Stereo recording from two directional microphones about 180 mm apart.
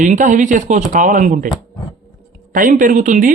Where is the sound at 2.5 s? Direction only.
50° right (ahead or behind).